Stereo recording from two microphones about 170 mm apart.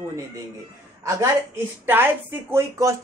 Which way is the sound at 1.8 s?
10° right (ahead or behind).